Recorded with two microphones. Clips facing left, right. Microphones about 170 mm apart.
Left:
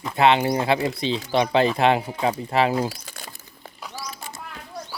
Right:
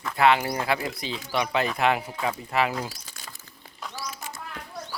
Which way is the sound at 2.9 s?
60° left (ahead or behind).